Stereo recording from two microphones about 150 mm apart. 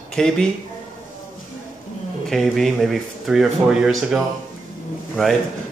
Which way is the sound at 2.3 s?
Centre (ahead or behind).